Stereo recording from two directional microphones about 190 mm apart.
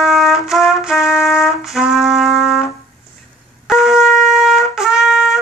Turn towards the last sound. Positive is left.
turn(degrees=0)  # may be behind; listen again after turning